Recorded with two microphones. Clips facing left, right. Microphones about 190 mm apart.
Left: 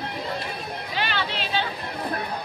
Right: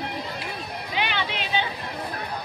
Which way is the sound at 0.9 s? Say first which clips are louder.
Right 1 dB; 15° right (ahead or behind).